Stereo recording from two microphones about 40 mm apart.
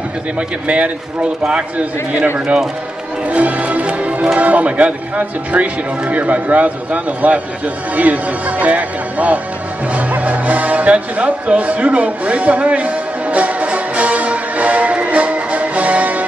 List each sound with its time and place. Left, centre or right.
0.4 s speech: right
2.3 s speech: right
3.3 s music: right
4.4 s speech: right
9.9 s music: right